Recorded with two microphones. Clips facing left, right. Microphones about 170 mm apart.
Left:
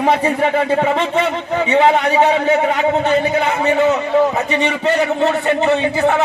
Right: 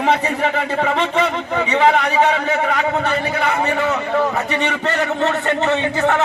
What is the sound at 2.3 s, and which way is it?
Speech, 25° left (ahead or behind).